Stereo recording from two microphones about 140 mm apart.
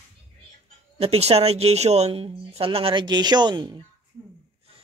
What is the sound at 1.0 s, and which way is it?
Speech, 45° right (ahead or behind).